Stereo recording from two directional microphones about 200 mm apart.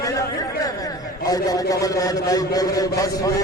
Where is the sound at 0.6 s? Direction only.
20° left (ahead or behind).